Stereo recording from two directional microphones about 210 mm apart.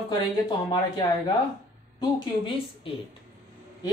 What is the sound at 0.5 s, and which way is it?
A woman's voice, 20° left (ahead or behind).